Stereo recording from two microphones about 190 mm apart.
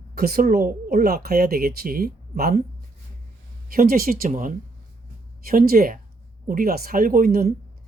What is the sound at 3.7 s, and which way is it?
Speech, 50° right (ahead or behind).